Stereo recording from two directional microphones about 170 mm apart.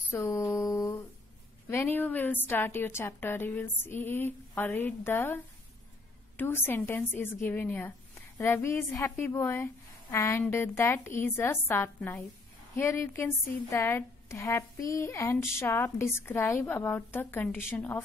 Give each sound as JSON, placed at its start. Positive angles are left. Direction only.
{"t": 0.1, "sound": "mantra", "side_deg": 15}
{"t": 1.7, "sound": "a woman's voice", "side_deg": 10}